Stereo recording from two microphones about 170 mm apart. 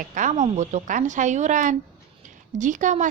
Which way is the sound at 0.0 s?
50° right (ahead or behind).